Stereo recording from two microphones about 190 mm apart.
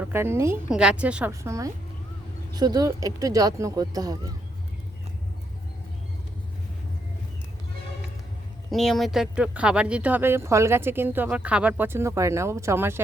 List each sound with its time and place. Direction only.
0.0 s a woman's voice: 10° right (ahead or behind)
8.7 s speech: centre (ahead or behind)